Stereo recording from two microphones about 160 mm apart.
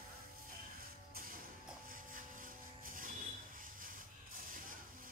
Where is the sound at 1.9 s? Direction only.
55° right (ahead or behind).